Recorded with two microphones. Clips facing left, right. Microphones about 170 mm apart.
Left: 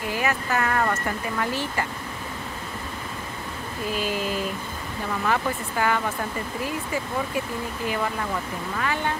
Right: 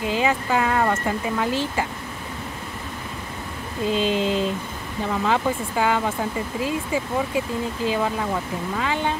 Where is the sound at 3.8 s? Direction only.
25° right (ahead or behind).